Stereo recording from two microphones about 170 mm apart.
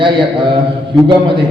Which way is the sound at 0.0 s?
30° right (ahead or behind).